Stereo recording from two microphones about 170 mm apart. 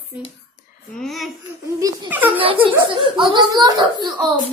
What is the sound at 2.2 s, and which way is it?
A child's voice, 30° right (ahead or behind).